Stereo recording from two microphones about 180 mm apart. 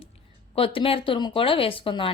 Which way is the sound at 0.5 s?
30° left (ahead or behind).